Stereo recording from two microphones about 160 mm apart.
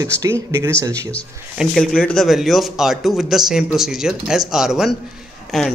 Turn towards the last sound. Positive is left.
turn(degrees=0)  # may be behind; listen again after turning